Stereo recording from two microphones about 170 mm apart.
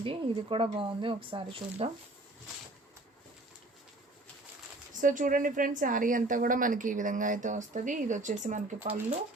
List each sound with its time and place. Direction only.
0.0 s speech: 30° right (ahead or behind)
4.9 s a woman's voice: 50° right (ahead or behind)